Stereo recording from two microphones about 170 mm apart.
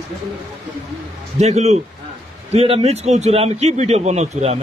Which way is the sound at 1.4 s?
40° right (ahead or behind).